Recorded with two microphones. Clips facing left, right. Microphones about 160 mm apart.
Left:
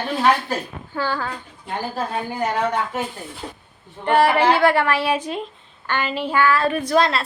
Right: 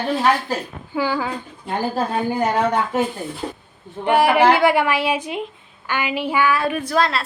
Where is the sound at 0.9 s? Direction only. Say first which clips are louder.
Right 3 dB; 10° right (ahead or behind).